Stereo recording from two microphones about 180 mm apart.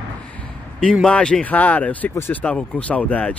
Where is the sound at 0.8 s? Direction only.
5° left (ahead or behind).